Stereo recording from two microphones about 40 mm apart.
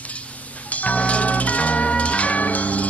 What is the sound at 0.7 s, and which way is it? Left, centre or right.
Music, left.